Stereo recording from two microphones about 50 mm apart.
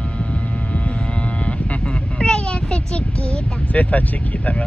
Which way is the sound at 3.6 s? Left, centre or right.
Left.